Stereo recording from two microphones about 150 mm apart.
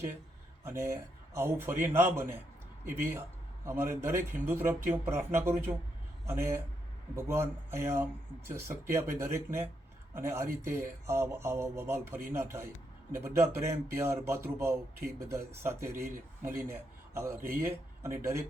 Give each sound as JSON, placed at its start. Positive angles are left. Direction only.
{"t": 0.8, "sound": "speech", "side_deg": -15}
{"t": 3.7, "sound": "speech", "side_deg": -15}